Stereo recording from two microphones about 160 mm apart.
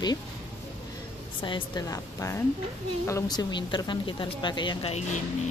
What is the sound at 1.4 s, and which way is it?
A woman's voice, 25° left (ahead or behind).